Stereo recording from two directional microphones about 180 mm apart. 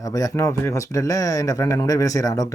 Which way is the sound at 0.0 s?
20° left (ahead or behind).